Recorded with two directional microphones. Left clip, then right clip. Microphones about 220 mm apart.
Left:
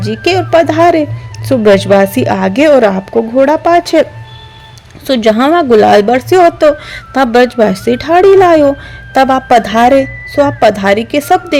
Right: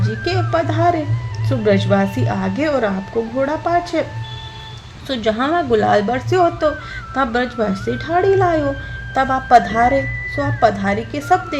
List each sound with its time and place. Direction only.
0.0 s a woman's voice: 35° left (ahead or behind)
5.0 s a woman's voice: 40° left (ahead or behind)